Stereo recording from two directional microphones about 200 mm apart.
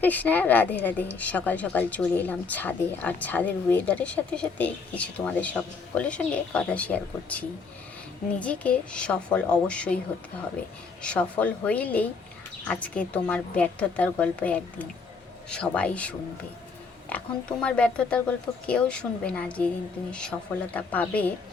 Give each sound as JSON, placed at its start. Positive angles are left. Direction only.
{"t": 0.0, "sound": "a woman's voice", "side_deg": 10}
{"t": 11.0, "sound": "a woman's voice", "side_deg": 5}